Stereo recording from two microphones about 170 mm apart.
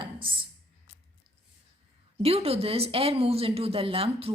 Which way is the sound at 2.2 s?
35° right (ahead or behind).